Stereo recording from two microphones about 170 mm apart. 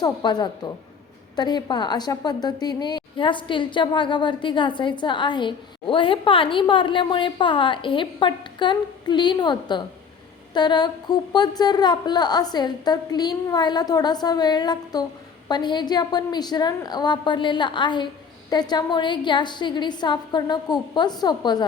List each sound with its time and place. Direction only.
0.0 s a woman's voice: 25° left (ahead or behind)